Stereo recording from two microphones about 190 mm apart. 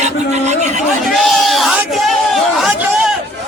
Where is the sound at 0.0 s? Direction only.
35° right (ahead or behind).